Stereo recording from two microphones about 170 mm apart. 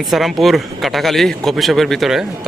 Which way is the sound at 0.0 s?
Centre (ahead or behind).